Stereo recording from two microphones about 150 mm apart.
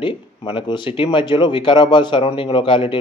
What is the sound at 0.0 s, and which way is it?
Speech, 35° left (ahead or behind).